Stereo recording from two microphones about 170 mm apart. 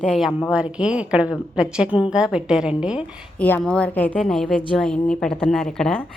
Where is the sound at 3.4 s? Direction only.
10° left (ahead or behind).